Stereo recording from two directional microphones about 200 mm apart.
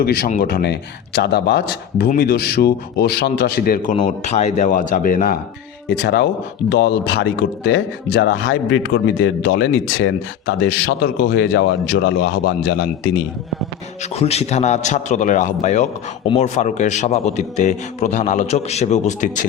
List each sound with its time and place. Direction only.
0.0 s speech: 45° left (ahead or behind)
4.0 s a man's voice: 35° left (ahead or behind)
5.9 s speech: 55° left (ahead or behind)
14.1 s a man's voice: 30° left (ahead or behind)